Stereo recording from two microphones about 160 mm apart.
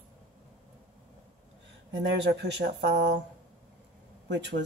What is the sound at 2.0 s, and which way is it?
Speech, 90° right.